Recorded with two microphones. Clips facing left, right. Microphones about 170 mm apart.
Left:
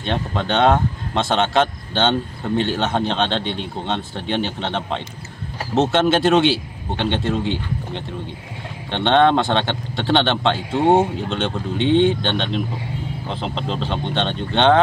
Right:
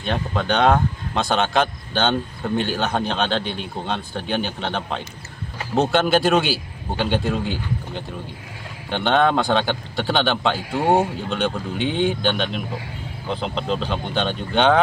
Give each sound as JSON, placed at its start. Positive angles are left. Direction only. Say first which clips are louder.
{"t": 0.1, "sound": "speech", "louder": "left 1 dB", "side_deg": 0}
{"t": 8.9, "sound": "speech", "louder": "left 3 dB", "side_deg": -5}
{"t": 10.7, "sound": "speech", "louder": "left 3 dB", "side_deg": 25}
{"t": 11.8, "sound": "speech", "louder": "left 5 dB", "side_deg": -5}